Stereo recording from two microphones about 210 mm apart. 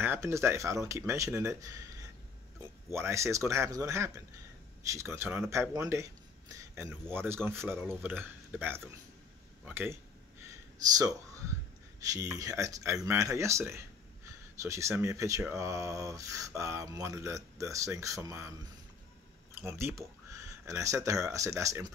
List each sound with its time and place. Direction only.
0.0 s speech: 10° right (ahead or behind)
11.0 s speech: 15° right (ahead or behind)
19.6 s speech: 10° right (ahead or behind)